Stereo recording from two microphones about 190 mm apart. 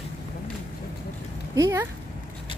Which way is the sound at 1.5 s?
15° right (ahead or behind).